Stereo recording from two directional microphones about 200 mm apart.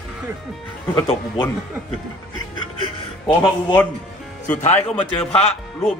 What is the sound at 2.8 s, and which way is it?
Speech, 25° left (ahead or behind).